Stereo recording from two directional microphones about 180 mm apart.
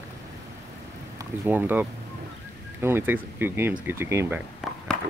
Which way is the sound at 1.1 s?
15° right (ahead or behind).